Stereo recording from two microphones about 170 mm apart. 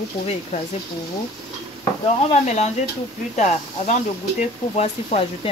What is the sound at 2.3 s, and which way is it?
Speech, 40° left (ahead or behind).